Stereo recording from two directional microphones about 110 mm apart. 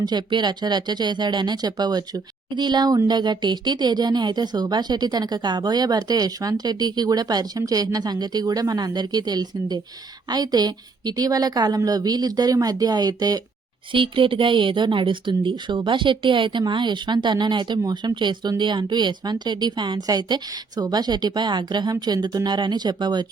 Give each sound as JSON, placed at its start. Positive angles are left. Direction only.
{"t": 0.0, "sound": "speech", "side_deg": -40}
{"t": 13.9, "sound": "a woman's voice", "side_deg": -50}